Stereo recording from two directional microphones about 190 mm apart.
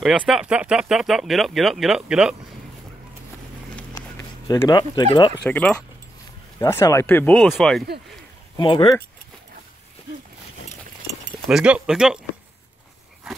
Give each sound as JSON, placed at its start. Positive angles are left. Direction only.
{"t": 0.0, "sound": "speech", "side_deg": -5}
{"t": 3.9, "sound": "a sound", "side_deg": 15}
{"t": 5.4, "sound": "speech", "side_deg": 5}
{"t": 8.5, "sound": "speech", "side_deg": 25}
{"t": 11.4, "sound": "speech", "side_deg": -5}